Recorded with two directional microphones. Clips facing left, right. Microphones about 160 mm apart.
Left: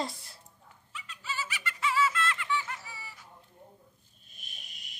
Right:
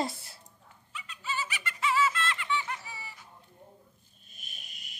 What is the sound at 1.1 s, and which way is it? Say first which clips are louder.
Laughter: right 2 dB; 20° right (ahead or behind).